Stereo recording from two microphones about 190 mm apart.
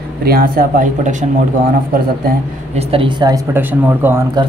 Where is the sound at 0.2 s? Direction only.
50° right (ahead or behind).